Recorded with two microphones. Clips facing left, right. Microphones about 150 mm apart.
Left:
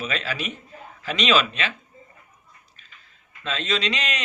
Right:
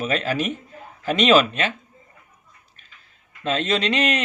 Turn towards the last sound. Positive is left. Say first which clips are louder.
# right 6 dB
turn(degrees=-55)  # may be behind; listen again after turning